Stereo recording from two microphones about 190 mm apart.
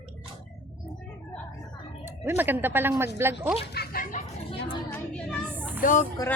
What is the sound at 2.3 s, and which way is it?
Speech, 10° right (ahead or behind).